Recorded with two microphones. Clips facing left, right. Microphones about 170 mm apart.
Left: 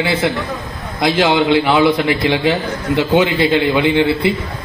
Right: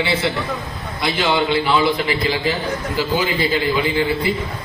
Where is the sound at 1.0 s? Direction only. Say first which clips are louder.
Left 5 dB; 80° left.